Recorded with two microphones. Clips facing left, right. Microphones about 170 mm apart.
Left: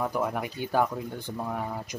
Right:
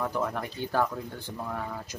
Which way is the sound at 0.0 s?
10° left (ahead or behind).